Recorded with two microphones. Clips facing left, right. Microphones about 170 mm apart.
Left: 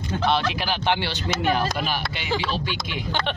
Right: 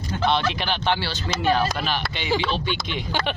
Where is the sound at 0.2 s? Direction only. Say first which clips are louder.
Right 1 dB; centre (ahead or behind).